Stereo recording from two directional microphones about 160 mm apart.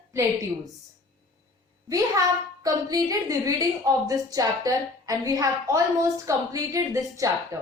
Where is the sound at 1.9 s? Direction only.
20° right (ahead or behind).